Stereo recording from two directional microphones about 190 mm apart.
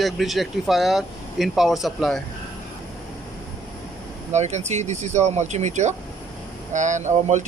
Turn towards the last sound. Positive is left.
turn(degrees=-40)  # may be behind; listen again after turning